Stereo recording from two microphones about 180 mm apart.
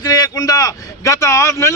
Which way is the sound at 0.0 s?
20° left (ahead or behind).